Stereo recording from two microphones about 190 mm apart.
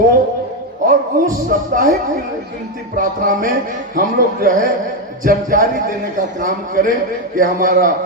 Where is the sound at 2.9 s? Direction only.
45° right (ahead or behind).